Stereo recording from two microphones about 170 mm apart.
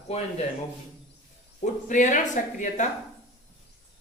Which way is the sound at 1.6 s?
45° left (ahead or behind).